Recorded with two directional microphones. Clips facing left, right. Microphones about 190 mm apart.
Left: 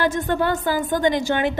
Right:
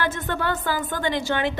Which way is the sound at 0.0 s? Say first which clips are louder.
Left 5 dB; 15° left (ahead or behind).